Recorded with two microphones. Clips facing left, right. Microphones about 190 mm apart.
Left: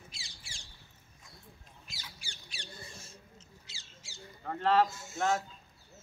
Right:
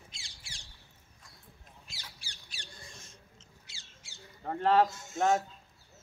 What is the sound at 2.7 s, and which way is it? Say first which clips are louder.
Rodents: left 4 dB; 5° left (ahead or behind).